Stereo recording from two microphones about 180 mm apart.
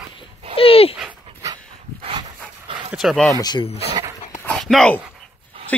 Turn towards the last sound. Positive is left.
turn(degrees=-30)  # may be behind; listen again after turning